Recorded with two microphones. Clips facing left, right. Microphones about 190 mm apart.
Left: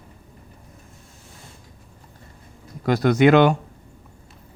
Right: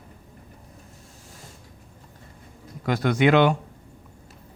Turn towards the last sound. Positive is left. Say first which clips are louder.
# left 4 dB
turn(degrees=45)  # may be behind; listen again after turning